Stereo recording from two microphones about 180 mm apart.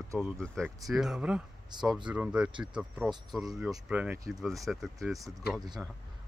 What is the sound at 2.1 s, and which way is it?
Speech, 5° right (ahead or behind).